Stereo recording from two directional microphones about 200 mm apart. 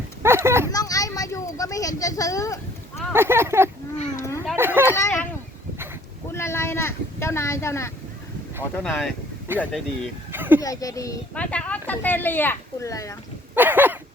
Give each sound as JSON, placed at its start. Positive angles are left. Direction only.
{"t": 0.2, "sound": "dog", "side_deg": -10}
{"t": 0.7, "sound": "a sound", "side_deg": 20}
{"t": 3.1, "sound": "speech", "side_deg": -10}
{"t": 4.9, "sound": "speech", "side_deg": 15}
{"t": 6.3, "sound": "speech", "side_deg": 10}
{"t": 8.7, "sound": "speech", "side_deg": 5}
{"t": 10.3, "sound": "a sound", "side_deg": -10}
{"t": 10.6, "sound": "speech", "side_deg": 15}
{"t": 13.6, "sound": "speech", "side_deg": -10}